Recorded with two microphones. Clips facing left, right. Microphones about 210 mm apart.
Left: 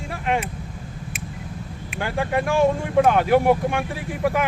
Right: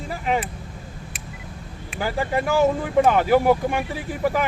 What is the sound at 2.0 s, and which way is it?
Speech, centre (ahead or behind).